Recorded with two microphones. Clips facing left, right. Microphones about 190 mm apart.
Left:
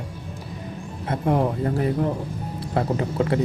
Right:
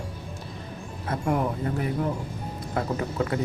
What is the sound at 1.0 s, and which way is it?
A man's voice, 25° left (ahead or behind).